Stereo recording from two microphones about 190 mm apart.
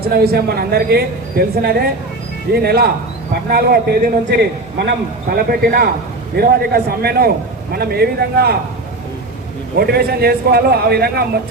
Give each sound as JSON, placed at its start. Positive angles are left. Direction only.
{"t": 0.0, "sound": "speech", "side_deg": -55}
{"t": 5.5, "sound": "a man's voice", "side_deg": -50}
{"t": 9.7, "sound": "speech", "side_deg": -55}